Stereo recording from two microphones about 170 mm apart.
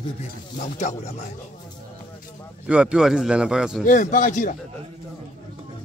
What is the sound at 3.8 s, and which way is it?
Speech, 50° left (ahead or behind).